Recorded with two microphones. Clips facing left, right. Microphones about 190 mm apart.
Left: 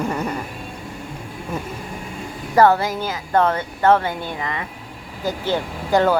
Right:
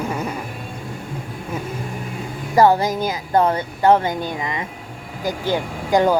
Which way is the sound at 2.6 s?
15° right (ahead or behind).